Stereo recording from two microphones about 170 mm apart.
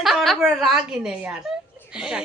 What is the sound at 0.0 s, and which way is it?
A woman's voice, centre (ahead or behind).